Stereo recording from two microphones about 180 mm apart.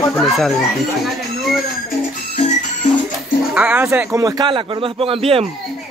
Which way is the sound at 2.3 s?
40° left (ahead or behind).